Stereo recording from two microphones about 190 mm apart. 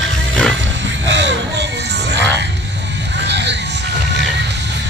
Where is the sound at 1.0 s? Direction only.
70° right (ahead or behind).